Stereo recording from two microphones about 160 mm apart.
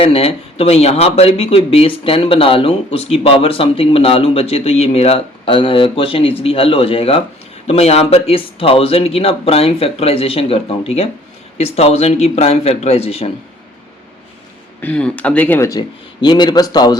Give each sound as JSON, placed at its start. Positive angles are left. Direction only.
{"t": 0.0, "sound": "speech", "side_deg": 40}
{"t": 14.8, "sound": "speech", "side_deg": 10}
{"t": 16.2, "sound": "speech", "side_deg": 25}